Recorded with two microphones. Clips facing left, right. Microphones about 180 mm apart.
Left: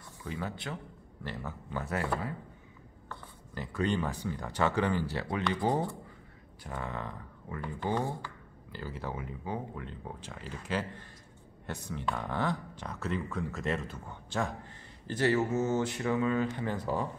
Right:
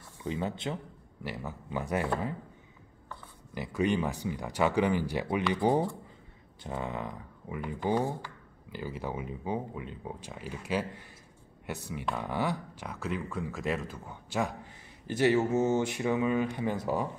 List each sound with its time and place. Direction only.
0.2 s speech: 25° right (ahead or behind)
1.2 s speech: 10° right (ahead or behind)
3.1 s speech: 10° right (ahead or behind)